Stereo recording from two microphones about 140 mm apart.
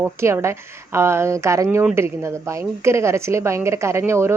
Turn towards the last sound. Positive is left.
turn(degrees=-20)  # may be behind; listen again after turning